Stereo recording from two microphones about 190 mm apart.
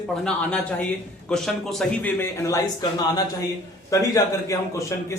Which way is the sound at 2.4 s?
20° left (ahead or behind).